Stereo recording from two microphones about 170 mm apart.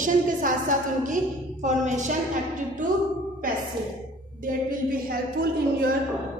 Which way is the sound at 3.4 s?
55° right (ahead or behind).